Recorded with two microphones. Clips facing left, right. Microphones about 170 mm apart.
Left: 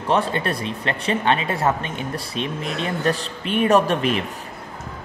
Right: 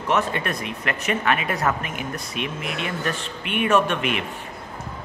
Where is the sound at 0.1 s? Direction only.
30° left (ahead or behind).